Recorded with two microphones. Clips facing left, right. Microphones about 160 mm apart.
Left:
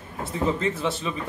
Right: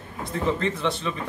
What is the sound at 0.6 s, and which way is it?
Mantra, 5° left (ahead or behind).